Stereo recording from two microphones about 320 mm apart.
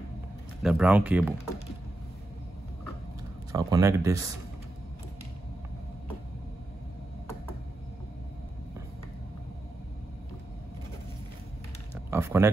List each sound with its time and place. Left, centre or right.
0.6 s speech: centre
3.5 s speech: centre
12.1 s speech: centre